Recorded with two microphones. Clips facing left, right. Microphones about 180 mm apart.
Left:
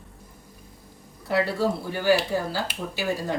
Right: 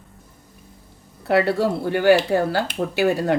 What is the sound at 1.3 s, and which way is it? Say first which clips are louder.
Speech: right 5 dB; 65° right (ahead or behind).